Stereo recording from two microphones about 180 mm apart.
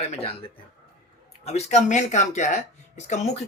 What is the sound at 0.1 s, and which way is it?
Speech, 35° left (ahead or behind).